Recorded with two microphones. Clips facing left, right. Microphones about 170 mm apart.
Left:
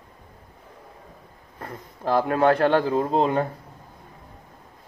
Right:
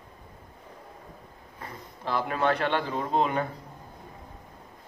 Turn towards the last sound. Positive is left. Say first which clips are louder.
# left 5 dB
turn(degrees=35)  # may be behind; listen again after turning